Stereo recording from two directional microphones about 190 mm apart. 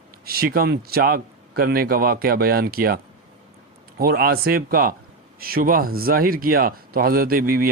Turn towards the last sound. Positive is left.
turn(degrees=-50)  # may be behind; listen again after turning